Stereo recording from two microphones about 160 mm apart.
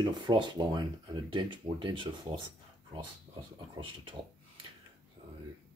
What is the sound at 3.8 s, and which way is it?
Speech, 35° right (ahead or behind).